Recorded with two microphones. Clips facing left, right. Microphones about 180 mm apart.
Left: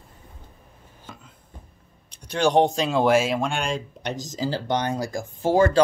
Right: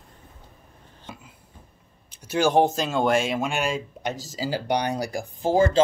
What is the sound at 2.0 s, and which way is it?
Speech, 5° right (ahead or behind).